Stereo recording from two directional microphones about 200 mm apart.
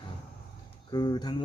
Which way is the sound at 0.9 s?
20° left (ahead or behind).